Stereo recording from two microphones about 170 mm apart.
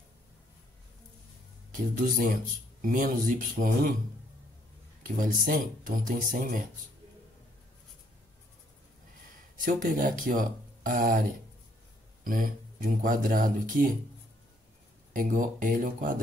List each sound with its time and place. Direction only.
1.7 s speech: 55° right (ahead or behind)
5.0 s speech: 55° right (ahead or behind)
9.6 s speech: 55° right (ahead or behind)
12.3 s speech: 55° right (ahead or behind)
15.1 s speech: 55° right (ahead or behind)